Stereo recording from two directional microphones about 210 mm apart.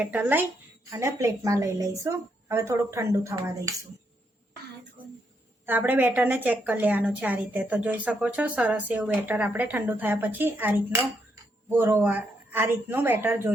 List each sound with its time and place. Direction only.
0.0 s a woman's voice: 10° right (ahead or behind)
5.6 s a woman's voice: 10° right (ahead or behind)